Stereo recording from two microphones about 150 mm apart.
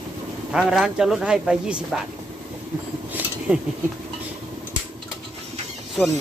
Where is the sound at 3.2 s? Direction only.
10° right (ahead or behind).